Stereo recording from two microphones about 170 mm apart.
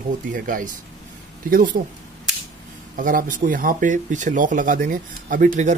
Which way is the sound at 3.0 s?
55° right (ahead or behind).